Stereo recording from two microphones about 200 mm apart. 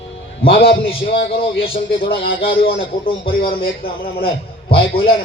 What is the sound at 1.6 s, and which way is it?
A man's voice, 25° left (ahead or behind).